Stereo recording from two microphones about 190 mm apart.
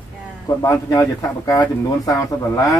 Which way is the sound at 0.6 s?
15° left (ahead or behind).